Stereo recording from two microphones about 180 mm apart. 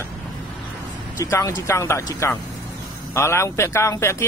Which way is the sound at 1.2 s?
20° left (ahead or behind).